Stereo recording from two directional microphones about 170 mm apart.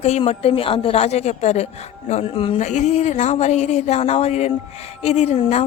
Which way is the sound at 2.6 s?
45° left (ahead or behind).